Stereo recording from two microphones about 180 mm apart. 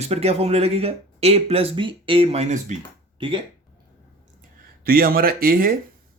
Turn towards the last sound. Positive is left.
turn(degrees=-55)  # may be behind; listen again after turning